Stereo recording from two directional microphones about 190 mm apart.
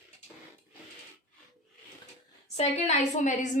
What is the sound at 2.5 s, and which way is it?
Speech, 35° left (ahead or behind).